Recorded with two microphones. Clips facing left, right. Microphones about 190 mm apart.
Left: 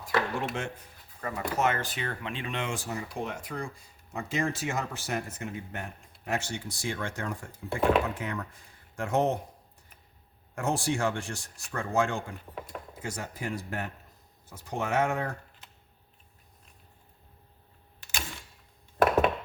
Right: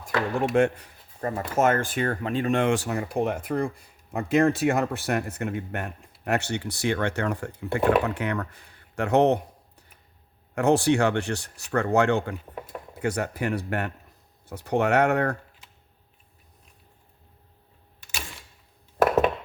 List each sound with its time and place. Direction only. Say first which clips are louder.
0.0 s speech: right 4 dB; 50° right (ahead or behind)
1.2 s speech: right 6 dB; 45° right (ahead or behind)
2.7 s speech: right 9 dB; 65° right (ahead or behind)
10.5 s speech: right 9 dB; 70° right (ahead or behind)